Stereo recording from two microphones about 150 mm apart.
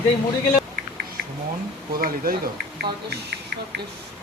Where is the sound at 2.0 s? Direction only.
75° right (ahead or behind).